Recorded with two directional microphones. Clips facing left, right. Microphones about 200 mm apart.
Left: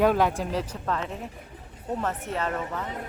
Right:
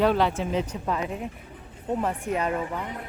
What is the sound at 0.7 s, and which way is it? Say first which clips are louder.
A woman's voice: right 2 dB; 10° right (ahead or behind).